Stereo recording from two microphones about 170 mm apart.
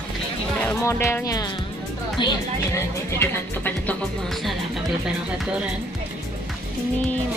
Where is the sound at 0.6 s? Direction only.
15° left (ahead or behind).